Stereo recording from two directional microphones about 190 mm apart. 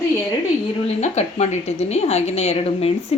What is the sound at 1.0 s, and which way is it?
A woman's voice, 35° left (ahead or behind).